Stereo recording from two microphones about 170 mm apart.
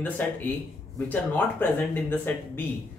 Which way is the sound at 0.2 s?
10° left (ahead or behind).